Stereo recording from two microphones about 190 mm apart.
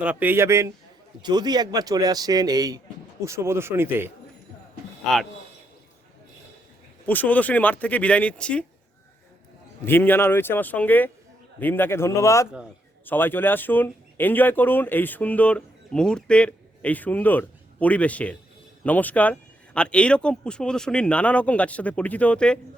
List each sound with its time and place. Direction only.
0.0 s a man's voice: 10° right (ahead or behind)
7.0 s speech: 10° left (ahead or behind)
9.8 s speech: 10° left (ahead or behind)